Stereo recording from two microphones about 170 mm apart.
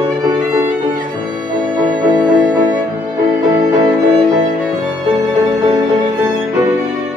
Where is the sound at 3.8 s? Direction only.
25° right (ahead or behind).